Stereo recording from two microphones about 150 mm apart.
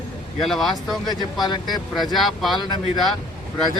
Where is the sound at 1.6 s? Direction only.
Centre (ahead or behind).